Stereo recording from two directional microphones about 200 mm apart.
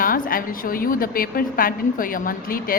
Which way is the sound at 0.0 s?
45° left (ahead or behind).